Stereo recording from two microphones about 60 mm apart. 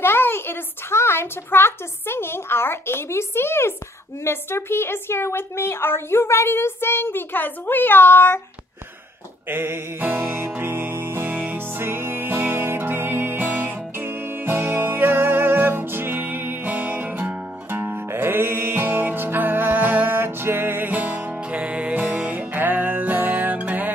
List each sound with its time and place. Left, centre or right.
0.0 s a woman's voice: left
9.5 s music: right